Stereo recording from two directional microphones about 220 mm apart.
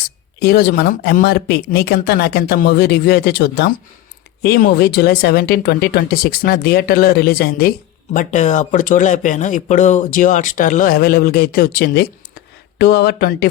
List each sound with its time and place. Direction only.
0.3 s speech: 45° left (ahead or behind)